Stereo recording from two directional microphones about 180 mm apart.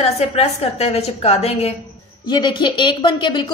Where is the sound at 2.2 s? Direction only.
25° left (ahead or behind).